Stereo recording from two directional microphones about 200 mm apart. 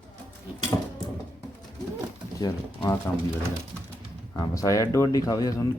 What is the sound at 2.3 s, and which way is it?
Pigeon, 20° left (ahead or behind).